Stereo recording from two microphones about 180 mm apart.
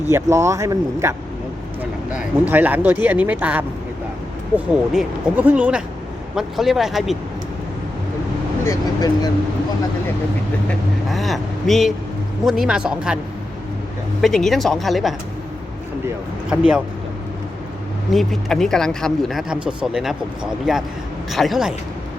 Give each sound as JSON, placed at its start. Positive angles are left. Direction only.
{"t": 0.1, "sound": "speech", "side_deg": -15}
{"t": 2.1, "sound": "speech", "side_deg": -10}
{"t": 8.6, "sound": "speech", "side_deg": 20}
{"t": 10.7, "sound": "speech", "side_deg": 0}
{"t": 14.2, "sound": "speech", "side_deg": 0}
{"t": 16.5, "sound": "speech", "side_deg": -5}
{"t": 18.1, "sound": "speech", "side_deg": 0}